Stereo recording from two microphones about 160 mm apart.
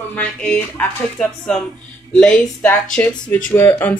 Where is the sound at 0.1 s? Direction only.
10° left (ahead or behind).